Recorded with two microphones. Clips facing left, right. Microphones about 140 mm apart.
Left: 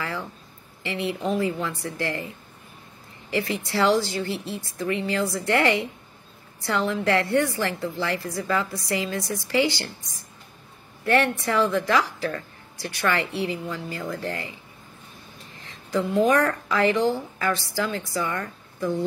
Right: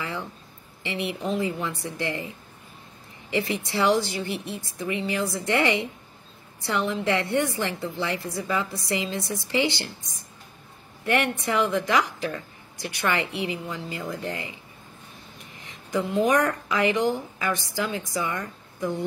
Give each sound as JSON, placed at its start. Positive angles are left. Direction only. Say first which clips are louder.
{"t": 0.8, "sound": "a woman's voice", "louder": "left 2 dB", "side_deg": -20}
{"t": 11.1, "sound": "a woman's voice", "louder": "left 3 dB", "side_deg": -20}
{"t": 15.6, "sound": "a sound", "louder": "left 2 dB", "side_deg": -20}
{"t": 16.3, "sound": "a woman's voice", "louder": "left 1 dB", "side_deg": -20}